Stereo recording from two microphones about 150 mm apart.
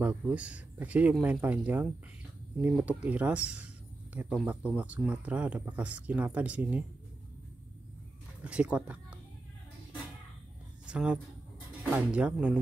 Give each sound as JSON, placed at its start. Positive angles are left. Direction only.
{"t": 0.0, "sound": "speech", "side_deg": -10}
{"t": 8.5, "sound": "speech", "side_deg": -5}
{"t": 10.9, "sound": "speech", "side_deg": -5}